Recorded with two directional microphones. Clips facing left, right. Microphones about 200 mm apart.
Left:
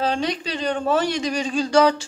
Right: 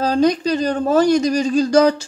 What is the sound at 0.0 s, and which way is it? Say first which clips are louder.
Speech: right 8 dB; 40° right (ahead or behind).